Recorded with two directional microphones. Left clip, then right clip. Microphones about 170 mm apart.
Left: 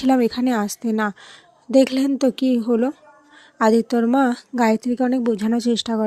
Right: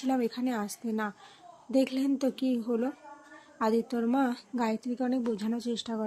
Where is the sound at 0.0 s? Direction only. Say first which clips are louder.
Left 12 dB; 50° left (ahead or behind).